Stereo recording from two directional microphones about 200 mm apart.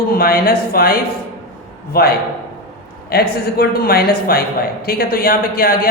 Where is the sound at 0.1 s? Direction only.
50° left (ahead or behind).